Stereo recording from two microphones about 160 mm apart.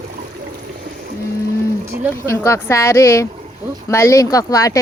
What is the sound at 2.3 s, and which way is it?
Speech, 15° left (ahead or behind).